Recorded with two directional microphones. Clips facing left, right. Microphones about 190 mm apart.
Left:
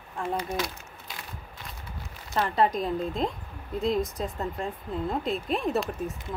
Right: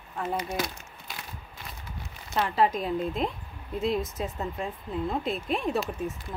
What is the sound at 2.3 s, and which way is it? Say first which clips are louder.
Speech: even; centre (ahead or behind).